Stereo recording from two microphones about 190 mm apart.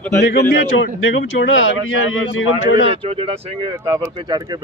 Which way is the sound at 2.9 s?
30° right (ahead or behind).